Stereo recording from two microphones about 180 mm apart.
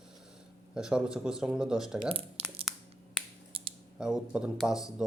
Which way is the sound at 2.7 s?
Centre (ahead or behind).